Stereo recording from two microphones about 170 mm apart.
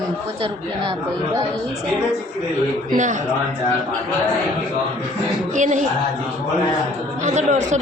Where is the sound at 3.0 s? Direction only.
45° right (ahead or behind).